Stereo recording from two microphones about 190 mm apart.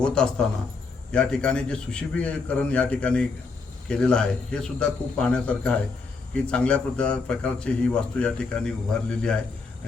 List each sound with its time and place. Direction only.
0.0 s a man's voice: 5° left (ahead or behind)